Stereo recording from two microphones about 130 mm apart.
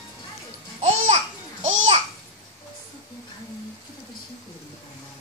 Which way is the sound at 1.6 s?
55° right (ahead or behind).